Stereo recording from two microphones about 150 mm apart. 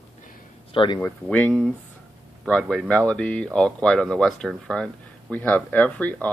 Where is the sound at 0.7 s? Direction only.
35° left (ahead or behind).